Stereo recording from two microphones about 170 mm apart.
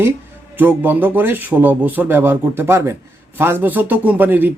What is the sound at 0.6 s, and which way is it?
A man's voice, 10° right (ahead or behind).